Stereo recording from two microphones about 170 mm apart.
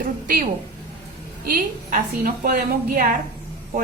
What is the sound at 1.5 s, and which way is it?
A woman's voice, 55° right (ahead or behind).